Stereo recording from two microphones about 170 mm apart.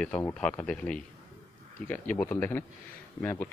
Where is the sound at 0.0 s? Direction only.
5° left (ahead or behind).